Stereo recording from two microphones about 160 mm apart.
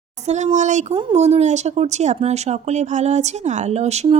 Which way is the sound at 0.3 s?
45° right (ahead or behind).